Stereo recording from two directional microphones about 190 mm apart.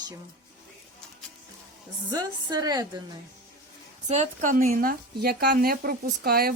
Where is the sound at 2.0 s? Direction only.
20° right (ahead or behind).